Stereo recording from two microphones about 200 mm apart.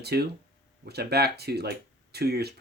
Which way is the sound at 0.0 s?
55° right (ahead or behind).